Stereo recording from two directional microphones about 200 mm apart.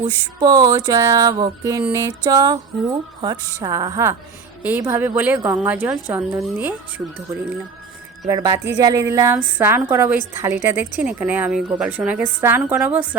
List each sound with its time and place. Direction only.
0.0 s a woman's voice: 20° right (ahead or behind)
8.3 s a woman's voice: 20° right (ahead or behind)